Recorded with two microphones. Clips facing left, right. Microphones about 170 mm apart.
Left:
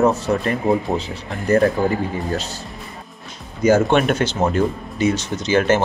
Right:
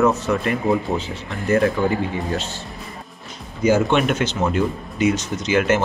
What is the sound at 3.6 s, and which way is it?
Speech, 45° left (ahead or behind).